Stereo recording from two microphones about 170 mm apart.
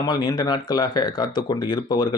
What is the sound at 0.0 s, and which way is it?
Speech, 25° left (ahead or behind).